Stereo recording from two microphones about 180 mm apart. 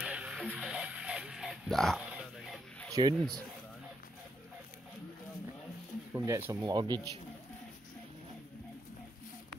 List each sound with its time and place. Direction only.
0.0 s a sound: 5° right (ahead or behind)
2.9 s speech: 25° right (ahead or behind)
6.1 s speech: 15° right (ahead or behind)